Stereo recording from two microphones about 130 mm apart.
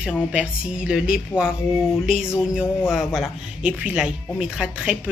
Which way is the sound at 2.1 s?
5° right (ahead or behind).